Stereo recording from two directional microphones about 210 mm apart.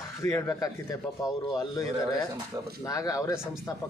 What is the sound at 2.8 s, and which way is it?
Speech, 15° left (ahead or behind).